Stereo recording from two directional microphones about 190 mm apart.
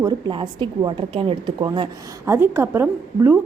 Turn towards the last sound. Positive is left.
turn(degrees=-10)  # may be behind; listen again after turning